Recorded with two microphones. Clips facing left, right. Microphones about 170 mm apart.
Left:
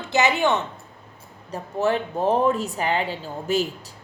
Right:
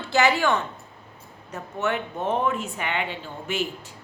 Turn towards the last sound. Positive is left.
turn(degrees=35)  # may be behind; listen again after turning